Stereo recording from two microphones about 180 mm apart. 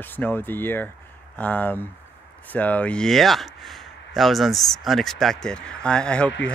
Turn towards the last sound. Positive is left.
turn(degrees=5)  # may be behind; listen again after turning